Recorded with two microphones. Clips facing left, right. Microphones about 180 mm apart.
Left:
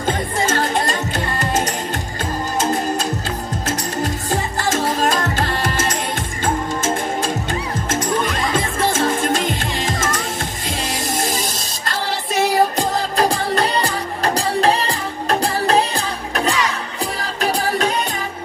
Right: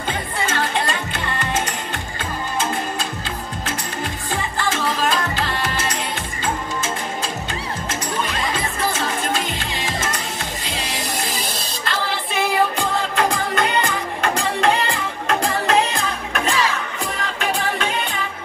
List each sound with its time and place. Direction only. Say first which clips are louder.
0.0 s music: left 5 dB; 45° left (ahead or behind)
3.6 s music: left 6 dB; 40° left (ahead or behind)
7.9 s music: left 6 dB; 50° left (ahead or behind)